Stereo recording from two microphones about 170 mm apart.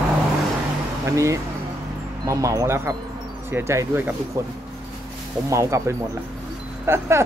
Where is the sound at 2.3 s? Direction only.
20° right (ahead or behind).